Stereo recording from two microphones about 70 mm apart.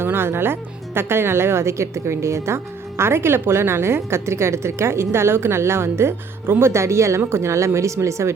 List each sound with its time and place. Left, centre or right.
0.0 s a woman's voice: right